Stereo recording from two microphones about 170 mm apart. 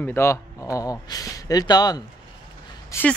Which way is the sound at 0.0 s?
15° left (ahead or behind).